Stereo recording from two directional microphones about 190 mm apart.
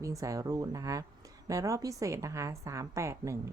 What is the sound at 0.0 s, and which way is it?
Speech, 15° right (ahead or behind).